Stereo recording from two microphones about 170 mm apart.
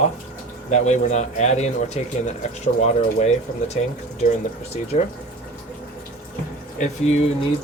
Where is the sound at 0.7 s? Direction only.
45° left (ahead or behind).